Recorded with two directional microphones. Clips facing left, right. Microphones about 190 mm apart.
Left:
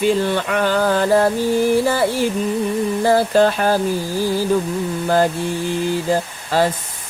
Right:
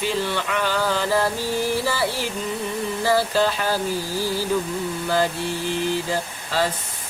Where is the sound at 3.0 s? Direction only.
50° left (ahead or behind).